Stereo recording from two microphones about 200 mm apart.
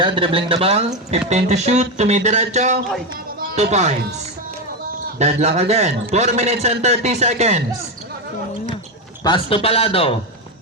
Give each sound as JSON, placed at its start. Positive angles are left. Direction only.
{"t": 0.0, "sound": "a man's voice", "side_deg": -25}
{"t": 5.0, "sound": "a man's voice", "side_deg": -35}
{"t": 9.2, "sound": "a man's voice", "side_deg": 25}